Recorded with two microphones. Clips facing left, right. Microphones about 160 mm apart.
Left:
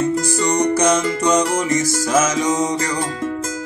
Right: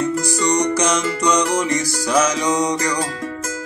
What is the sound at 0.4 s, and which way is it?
Music, 25° left (ahead or behind).